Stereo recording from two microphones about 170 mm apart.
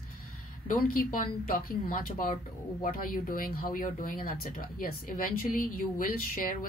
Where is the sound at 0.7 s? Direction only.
55° left (ahead or behind).